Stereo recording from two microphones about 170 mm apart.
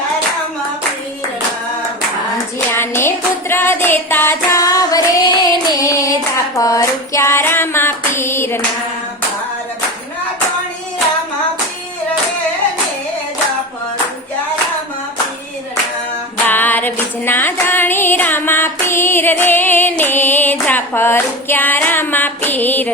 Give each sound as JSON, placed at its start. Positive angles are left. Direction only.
{"t": 2.7, "sound": "music", "side_deg": 15}
{"t": 3.5, "sound": "singing", "side_deg": 15}
{"t": 6.6, "sound": "female singing", "side_deg": 20}
{"t": 16.5, "sound": "female singing", "side_deg": 10}